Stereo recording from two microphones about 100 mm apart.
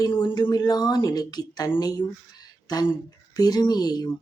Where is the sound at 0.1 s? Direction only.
55° left (ahead or behind).